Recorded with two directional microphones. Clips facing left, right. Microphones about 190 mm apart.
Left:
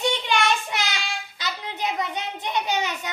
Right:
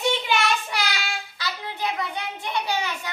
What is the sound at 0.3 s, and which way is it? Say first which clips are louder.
Child singing: left 2 dB; 5° right (ahead or behind).